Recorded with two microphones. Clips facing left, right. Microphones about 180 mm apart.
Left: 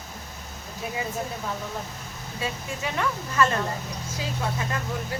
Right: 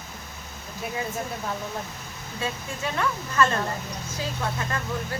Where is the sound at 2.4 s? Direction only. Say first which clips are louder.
Right 1 dB; 15° left (ahead or behind).